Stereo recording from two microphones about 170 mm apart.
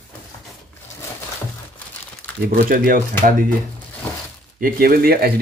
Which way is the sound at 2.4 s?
60° right (ahead or behind).